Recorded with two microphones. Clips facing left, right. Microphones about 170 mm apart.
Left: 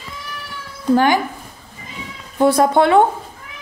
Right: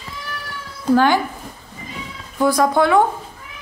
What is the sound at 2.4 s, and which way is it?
Speech, 25° left (ahead or behind).